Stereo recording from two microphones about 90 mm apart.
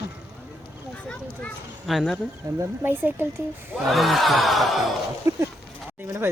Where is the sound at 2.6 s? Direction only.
25° right (ahead or behind).